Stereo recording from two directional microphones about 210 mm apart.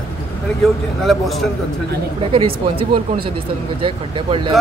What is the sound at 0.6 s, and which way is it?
Speech, centre (ahead or behind).